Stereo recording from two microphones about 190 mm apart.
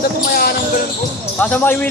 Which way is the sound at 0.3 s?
50° left (ahead or behind).